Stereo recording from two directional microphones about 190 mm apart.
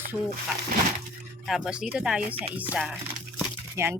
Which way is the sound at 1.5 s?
Centre (ahead or behind).